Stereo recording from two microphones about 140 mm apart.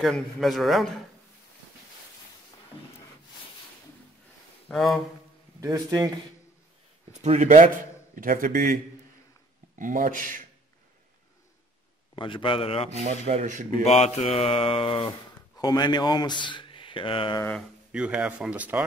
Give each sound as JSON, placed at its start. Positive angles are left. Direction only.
{"t": 0.0, "sound": "a man's voice", "side_deg": 0}
{"t": 4.6, "sound": "speech", "side_deg": 0}
{"t": 5.6, "sound": "a man's voice", "side_deg": -25}
{"t": 7.1, "sound": "a man's voice", "side_deg": -55}
{"t": 9.8, "sound": "a man's voice", "side_deg": -75}
{"t": 12.2, "sound": "a man's voice", "side_deg": 35}
{"t": 13.0, "sound": "speech", "side_deg": -55}
{"t": 13.8, "sound": "mantra", "side_deg": 50}
{"t": 15.0, "sound": "speech", "side_deg": 30}
{"t": 17.9, "sound": "speech", "side_deg": -5}